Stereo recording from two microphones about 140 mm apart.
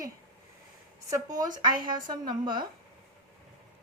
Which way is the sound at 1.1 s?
30° right (ahead or behind).